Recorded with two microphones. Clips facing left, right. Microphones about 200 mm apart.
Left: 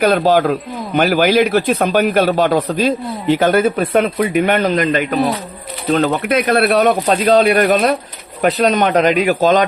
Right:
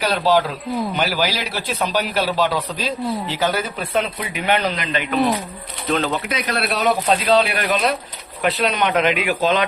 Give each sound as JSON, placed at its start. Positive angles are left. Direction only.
{"t": 0.0, "sound": "a man's voice", "side_deg": 50}